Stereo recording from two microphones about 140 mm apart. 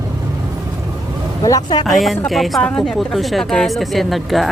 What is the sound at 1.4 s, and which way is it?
Speech, 30° left (ahead or behind).